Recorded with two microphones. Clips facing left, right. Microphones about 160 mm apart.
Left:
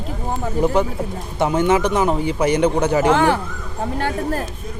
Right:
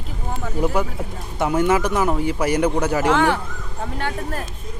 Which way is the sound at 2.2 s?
5° right (ahead or behind).